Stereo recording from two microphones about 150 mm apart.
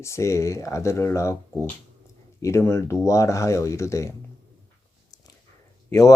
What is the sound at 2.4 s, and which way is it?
Speech, 20° left (ahead or behind).